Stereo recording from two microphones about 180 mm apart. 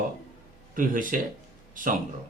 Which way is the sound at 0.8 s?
45° right (ahead or behind).